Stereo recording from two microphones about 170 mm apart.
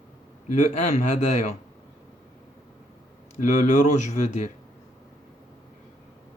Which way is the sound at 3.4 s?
45° left (ahead or behind).